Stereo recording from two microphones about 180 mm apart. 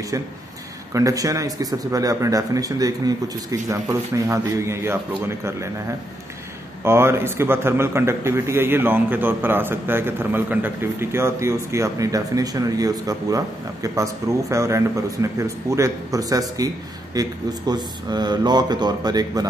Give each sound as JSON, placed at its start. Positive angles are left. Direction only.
{"t": 0.9, "sound": "a man's voice", "side_deg": -20}
{"t": 6.8, "sound": "a man's voice", "side_deg": -15}
{"t": 14.5, "sound": "speech", "side_deg": -15}